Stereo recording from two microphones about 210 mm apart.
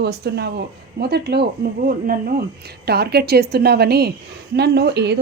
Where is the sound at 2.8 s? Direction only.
50° right (ahead or behind).